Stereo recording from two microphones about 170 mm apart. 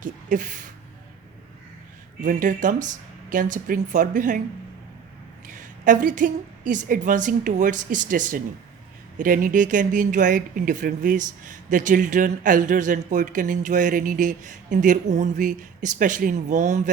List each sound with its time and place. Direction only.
0.0 s speech: 50° right (ahead or behind)
2.2 s speech: 50° right (ahead or behind)
5.5 s speech: 50° right (ahead or behind)